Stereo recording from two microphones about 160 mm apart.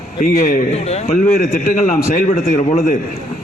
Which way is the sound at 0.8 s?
40° left (ahead or behind).